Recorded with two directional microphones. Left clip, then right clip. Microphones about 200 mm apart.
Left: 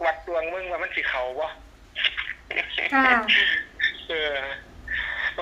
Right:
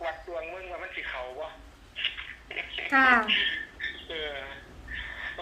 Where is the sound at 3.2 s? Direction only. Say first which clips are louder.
Left 7 dB; 55° left (ahead or behind).